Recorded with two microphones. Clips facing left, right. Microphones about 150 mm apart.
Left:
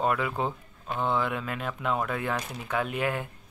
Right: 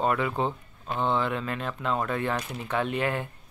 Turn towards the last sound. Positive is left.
turn(degrees=5)  # may be behind; listen again after turning